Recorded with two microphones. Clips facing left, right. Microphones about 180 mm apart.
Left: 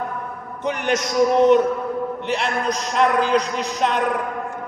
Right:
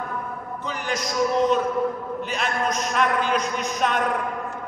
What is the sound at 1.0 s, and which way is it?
Speech, 70° left (ahead or behind).